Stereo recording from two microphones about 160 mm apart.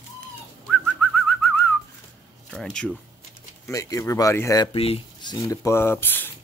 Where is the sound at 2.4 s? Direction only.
5° left (ahead or behind).